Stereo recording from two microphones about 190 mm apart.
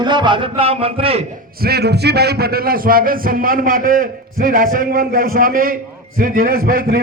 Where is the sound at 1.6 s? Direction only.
55° right (ahead or behind).